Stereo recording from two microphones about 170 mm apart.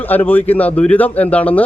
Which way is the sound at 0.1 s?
10° left (ahead or behind).